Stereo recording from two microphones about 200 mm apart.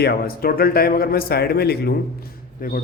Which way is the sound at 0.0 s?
50° left (ahead or behind).